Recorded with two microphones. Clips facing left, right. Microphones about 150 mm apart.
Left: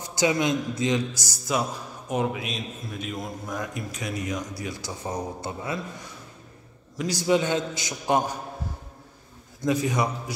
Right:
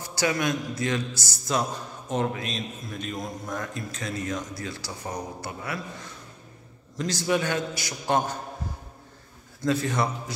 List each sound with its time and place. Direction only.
0.0 s a man's voice: 20° left (ahead or behind)
7.0 s a man's voice: 15° left (ahead or behind)
9.6 s a man's voice: 15° left (ahead or behind)